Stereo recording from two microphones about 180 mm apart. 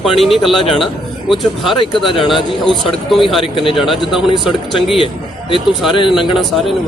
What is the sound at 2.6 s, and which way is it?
Speech, centre (ahead or behind).